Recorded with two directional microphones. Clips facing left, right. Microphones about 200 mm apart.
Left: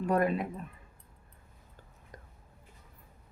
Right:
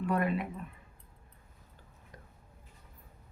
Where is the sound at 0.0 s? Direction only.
40° left (ahead or behind).